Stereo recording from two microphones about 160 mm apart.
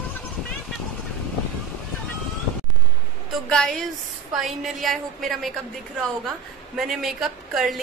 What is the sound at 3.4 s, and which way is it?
A woman's voice, 5° left (ahead or behind).